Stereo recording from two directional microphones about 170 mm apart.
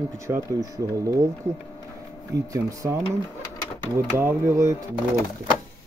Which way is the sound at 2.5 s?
20° right (ahead or behind).